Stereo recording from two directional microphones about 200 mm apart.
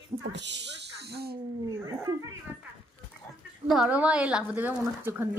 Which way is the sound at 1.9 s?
15° right (ahead or behind).